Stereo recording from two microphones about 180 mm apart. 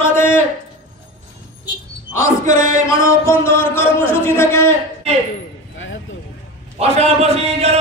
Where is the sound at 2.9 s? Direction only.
15° left (ahead or behind).